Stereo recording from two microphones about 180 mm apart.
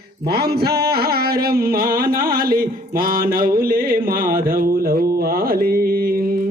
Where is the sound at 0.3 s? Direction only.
60° right (ahead or behind).